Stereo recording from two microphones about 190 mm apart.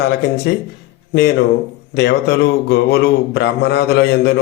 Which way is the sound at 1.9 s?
65° left (ahead or behind).